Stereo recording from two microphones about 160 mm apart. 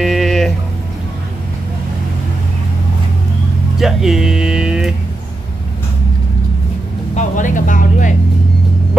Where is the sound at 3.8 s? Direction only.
5° right (ahead or behind).